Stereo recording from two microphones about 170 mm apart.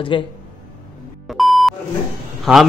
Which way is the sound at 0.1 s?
30° left (ahead or behind).